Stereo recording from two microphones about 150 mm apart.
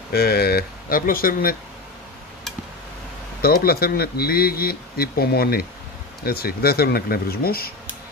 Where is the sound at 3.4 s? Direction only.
90° left.